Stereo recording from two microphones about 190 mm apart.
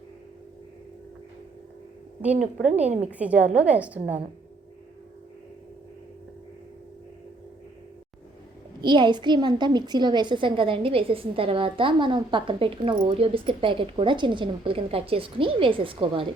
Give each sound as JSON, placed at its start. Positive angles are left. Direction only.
{"t": 2.7, "sound": "a woman's voice", "side_deg": -35}
{"t": 3.1, "sound": "a woman's voice", "side_deg": -5}
{"t": 8.8, "sound": "a woman's voice", "side_deg": -25}